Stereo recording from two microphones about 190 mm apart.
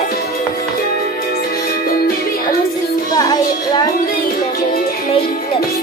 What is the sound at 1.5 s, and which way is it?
Music, 55° left (ahead or behind).